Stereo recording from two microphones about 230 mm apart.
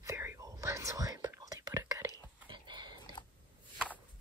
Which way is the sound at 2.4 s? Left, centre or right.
Centre.